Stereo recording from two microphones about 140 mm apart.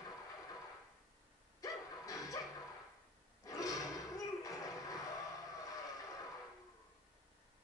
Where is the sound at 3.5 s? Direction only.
25° left (ahead or behind).